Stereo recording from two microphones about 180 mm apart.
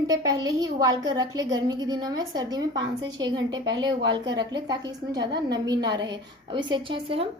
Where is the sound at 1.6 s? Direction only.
20° right (ahead or behind).